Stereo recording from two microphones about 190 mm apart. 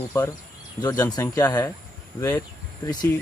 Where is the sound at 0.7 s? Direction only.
20° left (ahead or behind).